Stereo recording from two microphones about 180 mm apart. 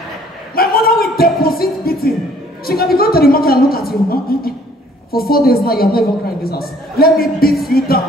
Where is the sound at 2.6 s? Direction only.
55° left (ahead or behind).